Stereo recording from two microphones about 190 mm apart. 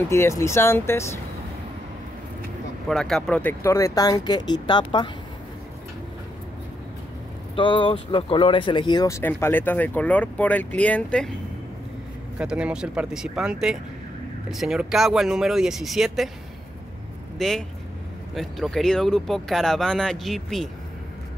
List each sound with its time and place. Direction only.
0.1 s speech: 15° left (ahead or behind)
2.9 s speech: centre (ahead or behind); by 5.1 s 25° left (ahead or behind)
7.5 s speech: 25° left (ahead or behind); by 11.3 s 5° left (ahead or behind)
12.4 s speech: 5° right (ahead or behind)
17.4 s speech: centre (ahead or behind)